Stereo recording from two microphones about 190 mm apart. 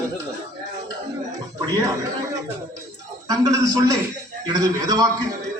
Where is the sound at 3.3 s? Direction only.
20° right (ahead or behind).